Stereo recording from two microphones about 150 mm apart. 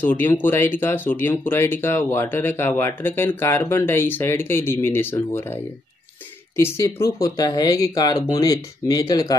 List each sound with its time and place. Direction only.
0.0 s speech: 10° left (ahead or behind)